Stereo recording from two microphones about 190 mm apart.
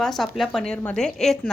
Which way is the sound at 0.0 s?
Centre (ahead or behind).